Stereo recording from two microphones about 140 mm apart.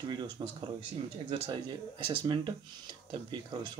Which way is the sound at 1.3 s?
35° right (ahead or behind).